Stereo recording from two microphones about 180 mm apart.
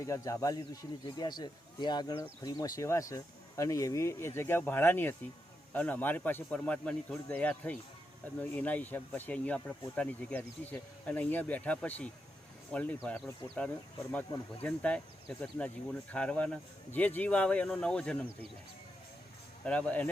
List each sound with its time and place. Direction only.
0.0 s speech: 20° left (ahead or behind)
19.6 s speech: 5° left (ahead or behind)